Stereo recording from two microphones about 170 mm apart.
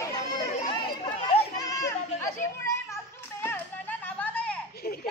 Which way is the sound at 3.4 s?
10° left (ahead or behind).